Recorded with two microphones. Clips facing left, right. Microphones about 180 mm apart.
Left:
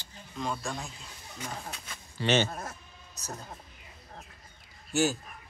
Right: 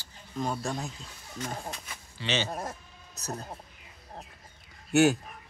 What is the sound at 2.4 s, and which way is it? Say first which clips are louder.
Speech: right 4 dB; 35° right (ahead or behind).